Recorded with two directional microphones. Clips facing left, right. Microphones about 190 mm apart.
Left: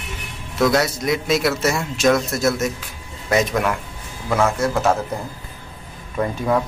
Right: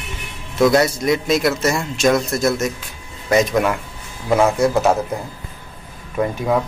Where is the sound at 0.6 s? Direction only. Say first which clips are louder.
Right 3 dB; centre (ahead or behind).